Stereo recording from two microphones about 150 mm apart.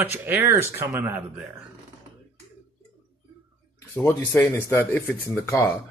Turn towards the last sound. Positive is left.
turn(degrees=15)  # may be behind; listen again after turning